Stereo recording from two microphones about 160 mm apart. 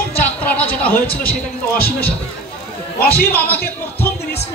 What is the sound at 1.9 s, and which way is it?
Speech, 70° left (ahead or behind).